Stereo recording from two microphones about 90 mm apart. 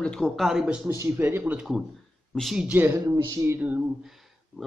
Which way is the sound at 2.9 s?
30° right (ahead or behind).